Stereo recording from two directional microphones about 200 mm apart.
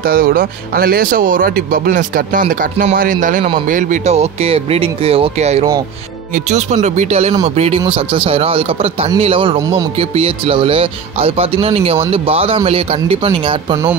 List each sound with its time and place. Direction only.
0.0 s speech: 45° right (ahead or behind); by 13.7 s 25° right (ahead or behind)